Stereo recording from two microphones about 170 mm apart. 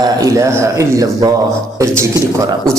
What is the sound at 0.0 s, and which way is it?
A man's voice, 20° right (ahead or behind).